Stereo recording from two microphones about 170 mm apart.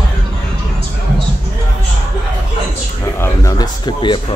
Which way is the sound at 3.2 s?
20° left (ahead or behind).